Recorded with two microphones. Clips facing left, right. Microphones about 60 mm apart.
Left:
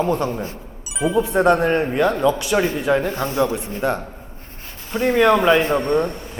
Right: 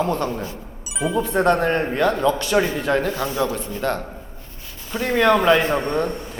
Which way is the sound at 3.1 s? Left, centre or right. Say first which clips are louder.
Left 1 dB; left.